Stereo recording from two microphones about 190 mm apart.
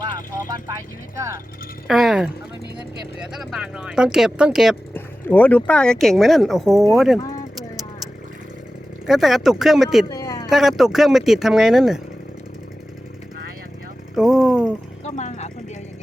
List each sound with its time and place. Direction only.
0.0 s vehicle: 20° right (ahead or behind)
1.9 s speech: centre (ahead or behind)
4.9 s speech: 10° left (ahead or behind)
9.0 s speech: centre (ahead or behind)
10.1 s a sound: 15° left (ahead or behind)
10.5 s speech: centre (ahead or behind)
14.2 s speech: 5° right (ahead or behind)
15.0 s a sound: 40° left (ahead or behind)